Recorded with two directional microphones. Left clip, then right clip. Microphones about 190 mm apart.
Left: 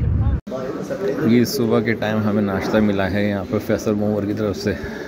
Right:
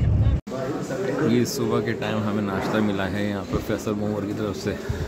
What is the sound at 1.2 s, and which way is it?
A man's voice, 20° left (ahead or behind).